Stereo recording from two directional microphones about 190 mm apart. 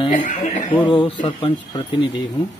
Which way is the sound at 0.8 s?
25° left (ahead or behind).